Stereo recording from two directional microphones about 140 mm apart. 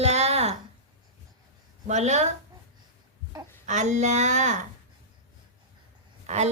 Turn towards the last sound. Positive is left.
turn(degrees=-55)  # may be behind; listen again after turning